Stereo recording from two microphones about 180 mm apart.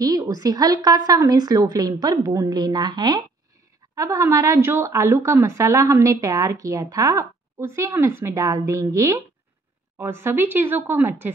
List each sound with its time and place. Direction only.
0.0 s a woman's voice: 20° right (ahead or behind)